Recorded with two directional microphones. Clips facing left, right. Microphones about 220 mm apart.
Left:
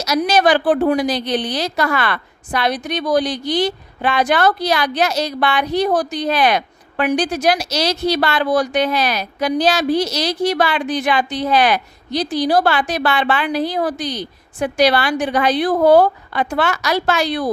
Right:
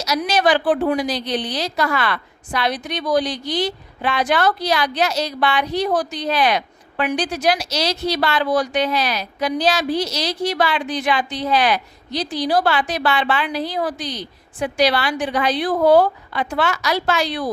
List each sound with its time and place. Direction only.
0.2 s speech: 45° left (ahead or behind)